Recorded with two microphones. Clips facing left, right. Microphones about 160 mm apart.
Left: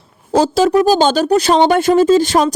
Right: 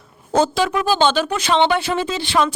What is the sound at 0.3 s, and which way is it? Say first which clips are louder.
Speech: left 6 dB; 35° left (ahead or behind).